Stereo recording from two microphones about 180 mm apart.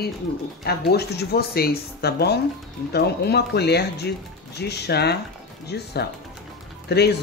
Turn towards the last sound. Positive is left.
turn(degrees=65)  # may be behind; listen again after turning